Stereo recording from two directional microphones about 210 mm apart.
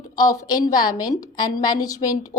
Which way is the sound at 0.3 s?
15° left (ahead or behind).